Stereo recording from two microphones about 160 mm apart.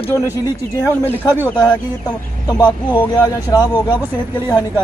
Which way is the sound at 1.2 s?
10° right (ahead or behind).